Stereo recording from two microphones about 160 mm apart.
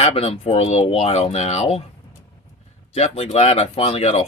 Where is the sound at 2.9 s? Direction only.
40° left (ahead or behind).